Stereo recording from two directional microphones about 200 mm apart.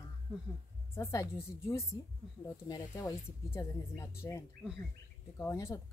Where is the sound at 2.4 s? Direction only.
15° left (ahead or behind).